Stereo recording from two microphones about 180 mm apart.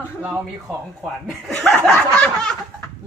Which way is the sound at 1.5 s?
5° left (ahead or behind).